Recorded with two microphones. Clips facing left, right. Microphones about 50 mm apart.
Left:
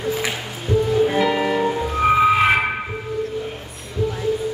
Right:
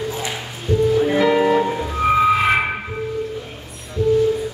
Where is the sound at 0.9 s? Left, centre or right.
Centre.